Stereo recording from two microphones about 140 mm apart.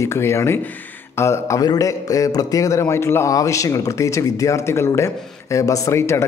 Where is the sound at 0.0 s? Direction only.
20° left (ahead or behind).